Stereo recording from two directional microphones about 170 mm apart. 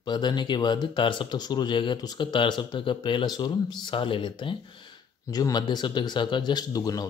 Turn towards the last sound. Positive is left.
turn(degrees=20)  # may be behind; listen again after turning